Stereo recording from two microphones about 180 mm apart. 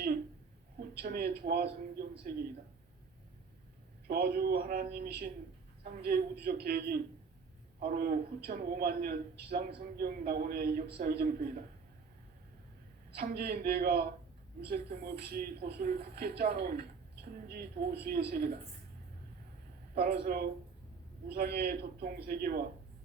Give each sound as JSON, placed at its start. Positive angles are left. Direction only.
{"t": 1.0, "sound": "a man's voice", "side_deg": -60}
{"t": 4.0, "sound": "a man's voice", "side_deg": -60}
{"t": 6.4, "sound": "a man's voice", "side_deg": -60}
{"t": 13.1, "sound": "a man's voice", "side_deg": -60}
{"t": 20.0, "sound": "a man's voice", "side_deg": -55}